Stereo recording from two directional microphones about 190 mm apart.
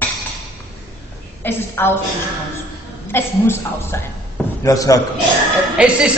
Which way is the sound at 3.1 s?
10° left (ahead or behind).